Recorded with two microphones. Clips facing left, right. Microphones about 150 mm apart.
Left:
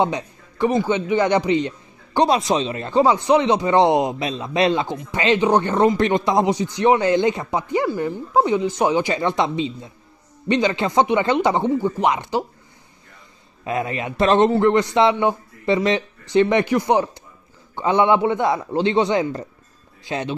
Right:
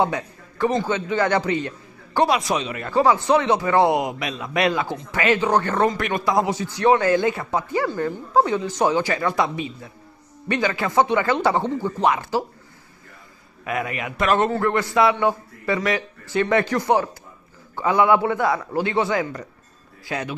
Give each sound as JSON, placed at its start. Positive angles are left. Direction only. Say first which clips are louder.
{"t": 0.0, "sound": "a man's voice", "louder": "left 1 dB", "side_deg": 20}
{"t": 13.7, "sound": "a man's voice", "louder": "left 3 dB", "side_deg": 25}